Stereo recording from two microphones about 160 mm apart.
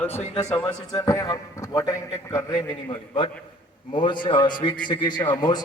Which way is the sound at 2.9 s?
35° left (ahead or behind).